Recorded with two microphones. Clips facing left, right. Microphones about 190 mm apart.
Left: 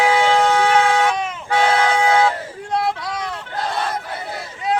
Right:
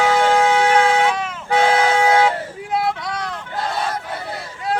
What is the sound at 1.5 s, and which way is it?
Vehicle, 20° right (ahead or behind).